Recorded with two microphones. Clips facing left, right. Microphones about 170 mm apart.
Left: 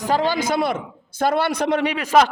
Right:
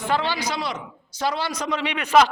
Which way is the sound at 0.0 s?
40° left (ahead or behind).